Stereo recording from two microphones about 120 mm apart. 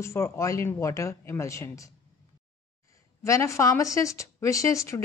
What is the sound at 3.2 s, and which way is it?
Speech, 25° left (ahead or behind).